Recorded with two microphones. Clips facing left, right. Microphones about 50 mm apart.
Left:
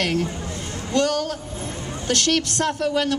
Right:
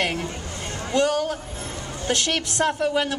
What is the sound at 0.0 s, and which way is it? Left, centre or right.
A woman's voice, centre.